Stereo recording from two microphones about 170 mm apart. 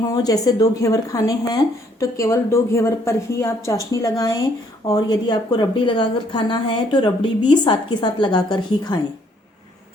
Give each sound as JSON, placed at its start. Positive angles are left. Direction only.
{"t": 0.1, "sound": "speech", "side_deg": 20}